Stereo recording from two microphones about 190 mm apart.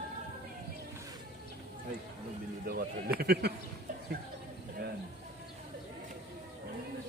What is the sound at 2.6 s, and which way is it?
Speech, 50° right (ahead or behind).